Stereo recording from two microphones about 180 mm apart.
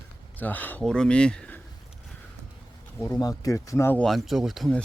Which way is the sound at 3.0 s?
20° left (ahead or behind).